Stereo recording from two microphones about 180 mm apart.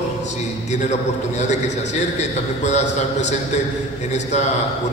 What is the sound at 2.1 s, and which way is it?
A man's voice, 40° left (ahead or behind).